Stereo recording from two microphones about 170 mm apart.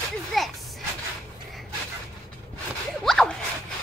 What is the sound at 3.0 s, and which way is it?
Zipper, 5° left (ahead or behind).